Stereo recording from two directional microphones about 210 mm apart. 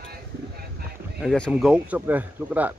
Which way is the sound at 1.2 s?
Centre (ahead or behind).